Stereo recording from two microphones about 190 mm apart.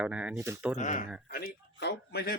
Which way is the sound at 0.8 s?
40° left (ahead or behind).